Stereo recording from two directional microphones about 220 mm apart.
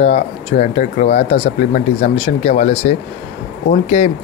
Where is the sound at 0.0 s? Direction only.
30° left (ahead or behind).